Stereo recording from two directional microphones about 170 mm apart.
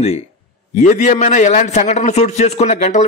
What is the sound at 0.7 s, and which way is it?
A man's voice, 45° left (ahead or behind).